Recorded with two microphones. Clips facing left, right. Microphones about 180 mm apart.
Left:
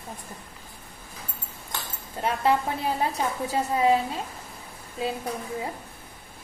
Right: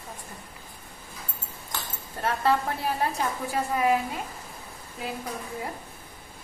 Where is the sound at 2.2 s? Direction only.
15° left (ahead or behind).